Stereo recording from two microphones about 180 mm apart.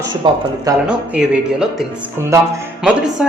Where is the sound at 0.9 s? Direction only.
5° right (ahead or behind).